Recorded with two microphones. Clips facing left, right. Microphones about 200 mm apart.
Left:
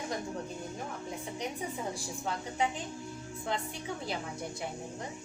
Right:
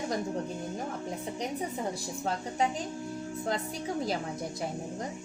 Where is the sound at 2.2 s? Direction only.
40° right (ahead or behind).